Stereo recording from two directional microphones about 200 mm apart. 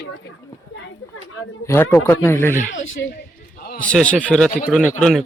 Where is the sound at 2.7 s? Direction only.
70° left (ahead or behind).